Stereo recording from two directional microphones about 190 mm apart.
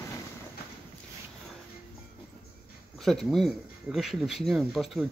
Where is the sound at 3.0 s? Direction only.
Centre (ahead or behind).